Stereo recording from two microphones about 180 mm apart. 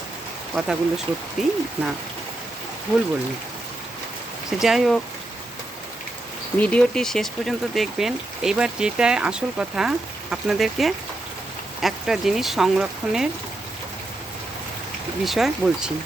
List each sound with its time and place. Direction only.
0.5 s speech: 5° right (ahead or behind)
4.6 s speech: centre (ahead or behind)
6.6 s speech: 5° left (ahead or behind)
15.2 s speech: centre (ahead or behind)